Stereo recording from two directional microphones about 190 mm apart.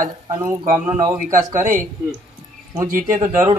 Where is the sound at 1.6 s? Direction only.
45° right (ahead or behind).